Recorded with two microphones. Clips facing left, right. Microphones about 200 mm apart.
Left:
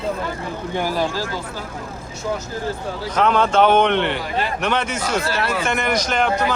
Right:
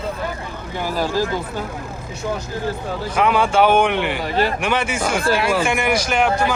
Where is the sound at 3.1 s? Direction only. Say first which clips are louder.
Even; 10° right (ahead or behind).